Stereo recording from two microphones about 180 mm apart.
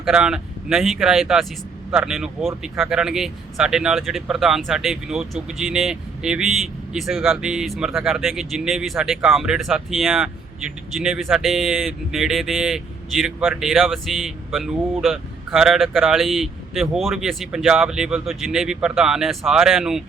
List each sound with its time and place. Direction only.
0.0 s speech: 5° right (ahead or behind)